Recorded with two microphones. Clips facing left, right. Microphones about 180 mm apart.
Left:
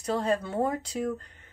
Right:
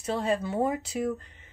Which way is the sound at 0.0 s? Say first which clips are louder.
Even; 5° right (ahead or behind).